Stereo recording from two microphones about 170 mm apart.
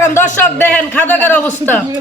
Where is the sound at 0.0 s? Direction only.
15° left (ahead or behind).